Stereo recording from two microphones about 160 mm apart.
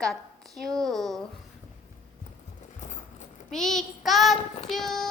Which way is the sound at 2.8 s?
50° left (ahead or behind).